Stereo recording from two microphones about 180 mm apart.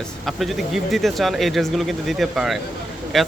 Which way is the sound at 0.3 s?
Centre (ahead or behind).